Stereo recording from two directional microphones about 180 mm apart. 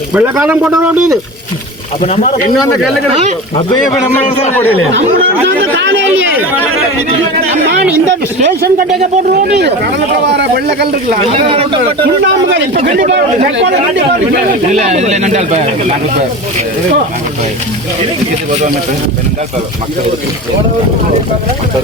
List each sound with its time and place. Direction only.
0.1 s speech: 5° right (ahead or behind)
2.0 s speech: 35° left (ahead or behind)
4.3 s speech: 40° left (ahead or behind)
9.5 s speech: 70° right (ahead or behind)
11.3 s speech: 30° right (ahead or behind)
12.0 s speech: 80° right
14.8 s speech: 40° right (ahead or behind)